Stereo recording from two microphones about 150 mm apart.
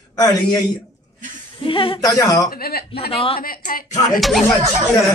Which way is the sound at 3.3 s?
75° left (ahead or behind).